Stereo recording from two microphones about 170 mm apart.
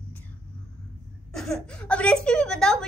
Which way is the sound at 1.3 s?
5° left (ahead or behind).